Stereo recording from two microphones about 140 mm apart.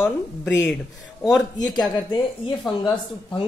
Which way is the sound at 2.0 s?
35° left (ahead or behind).